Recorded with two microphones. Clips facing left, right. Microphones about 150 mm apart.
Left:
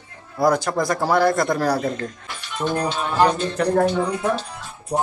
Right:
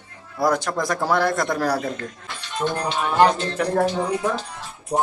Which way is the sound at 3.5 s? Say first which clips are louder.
Left 2 dB; centre (ahead or behind).